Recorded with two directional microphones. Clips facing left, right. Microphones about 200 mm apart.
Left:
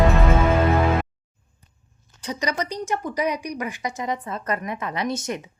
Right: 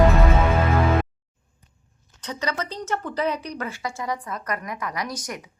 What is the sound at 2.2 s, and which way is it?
A woman's voice, 15° left (ahead or behind).